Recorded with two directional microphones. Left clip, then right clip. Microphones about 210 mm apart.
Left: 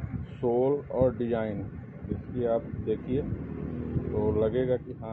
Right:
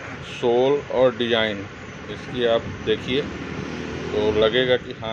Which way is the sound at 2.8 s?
5° right (ahead or behind).